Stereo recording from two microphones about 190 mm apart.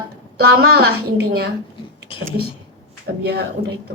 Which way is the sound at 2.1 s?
30° left (ahead or behind).